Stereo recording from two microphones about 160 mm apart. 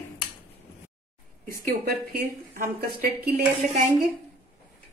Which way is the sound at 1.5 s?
70° right (ahead or behind).